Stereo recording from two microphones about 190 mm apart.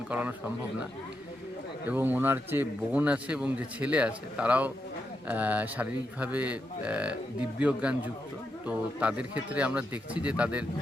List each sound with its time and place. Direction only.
0.1 s a man's voice: 10° right (ahead or behind)
1.9 s a man's voice: 10° right (ahead or behind)